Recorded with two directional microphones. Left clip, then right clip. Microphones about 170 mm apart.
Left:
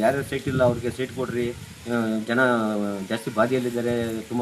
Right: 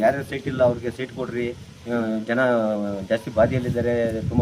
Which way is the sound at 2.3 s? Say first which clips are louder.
Right 1 dB; 25° right (ahead or behind).